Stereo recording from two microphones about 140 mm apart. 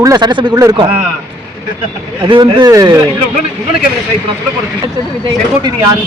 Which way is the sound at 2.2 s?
35° right (ahead or behind).